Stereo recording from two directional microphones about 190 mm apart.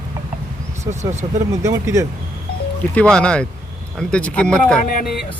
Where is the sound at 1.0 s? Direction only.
35° right (ahead or behind).